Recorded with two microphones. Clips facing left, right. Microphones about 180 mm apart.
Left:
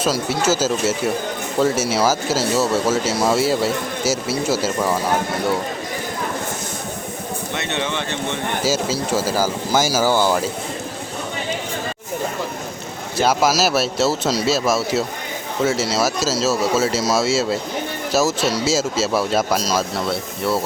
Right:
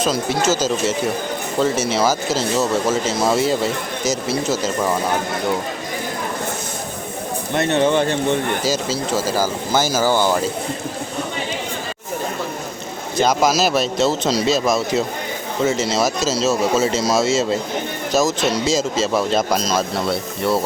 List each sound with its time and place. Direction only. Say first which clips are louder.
0.0 s speech: right 1 dB; 10° left (ahead or behind)
7.5 s speech: right 9 dB; 40° right (ahead or behind)
8.6 s speech: even; 10° left (ahead or behind)
13.1 s speech: right 1 dB; 5° left (ahead or behind)